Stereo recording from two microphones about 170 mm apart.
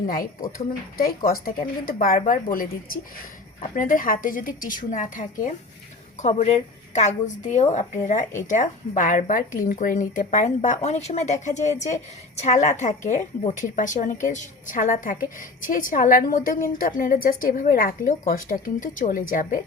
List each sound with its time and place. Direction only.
0.1 s a woman's voice: 55° left (ahead or behind)